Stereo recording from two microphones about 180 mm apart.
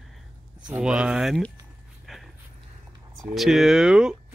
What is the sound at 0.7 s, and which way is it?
Speech, 5° right (ahead or behind).